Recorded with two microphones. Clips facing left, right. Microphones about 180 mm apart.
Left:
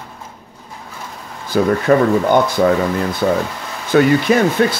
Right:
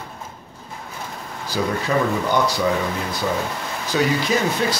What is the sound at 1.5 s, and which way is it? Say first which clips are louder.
Speech: left 8 dB; 55° left (ahead or behind).